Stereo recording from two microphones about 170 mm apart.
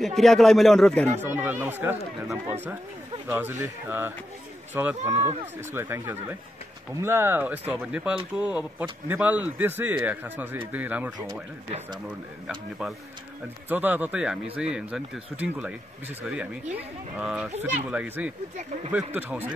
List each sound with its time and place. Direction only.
0.0 s speech: centre (ahead or behind)
1.3 s speech: 10° right (ahead or behind)
3.3 s speech: 10° right (ahead or behind)
5.1 s speech: 40° right (ahead or behind)
5.7 s speech: 15° right (ahead or behind)
12.1 s speech: 5° right (ahead or behind)